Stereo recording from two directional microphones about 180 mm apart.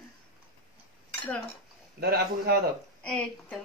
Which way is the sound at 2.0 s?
60° right (ahead or behind).